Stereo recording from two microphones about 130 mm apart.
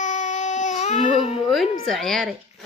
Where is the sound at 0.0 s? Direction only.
70° left (ahead or behind).